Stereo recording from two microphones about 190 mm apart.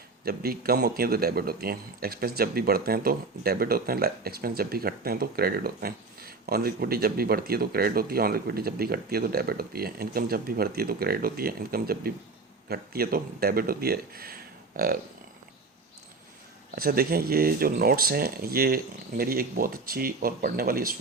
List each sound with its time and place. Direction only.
0.3 s a man's voice: 50° right (ahead or behind)
16.7 s a man's voice: 50° right (ahead or behind)